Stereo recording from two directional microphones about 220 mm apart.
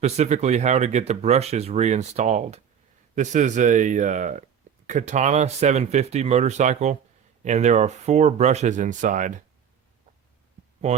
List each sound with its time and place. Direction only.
0.0 s speech: 30° right (ahead or behind)
10.8 s speech: 30° right (ahead or behind)